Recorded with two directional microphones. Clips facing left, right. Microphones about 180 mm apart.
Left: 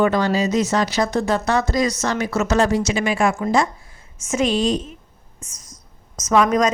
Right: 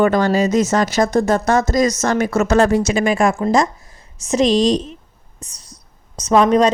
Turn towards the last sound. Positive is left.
turn(degrees=-30)  # may be behind; listen again after turning